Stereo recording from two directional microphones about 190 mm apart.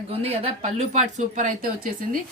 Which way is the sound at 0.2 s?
30° right (ahead or behind).